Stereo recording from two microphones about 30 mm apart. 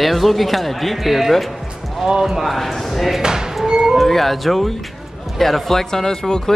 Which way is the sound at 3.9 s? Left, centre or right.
Centre.